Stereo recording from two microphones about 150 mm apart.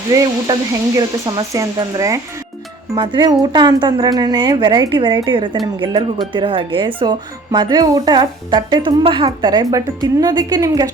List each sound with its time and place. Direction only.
0.1 s speech: 20° right (ahead or behind)
2.9 s speech: 30° right (ahead or behind)